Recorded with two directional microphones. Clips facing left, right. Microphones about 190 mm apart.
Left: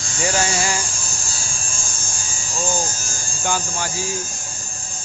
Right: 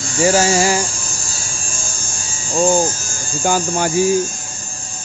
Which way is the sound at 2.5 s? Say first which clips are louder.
Right 10 dB; 50° right (ahead or behind).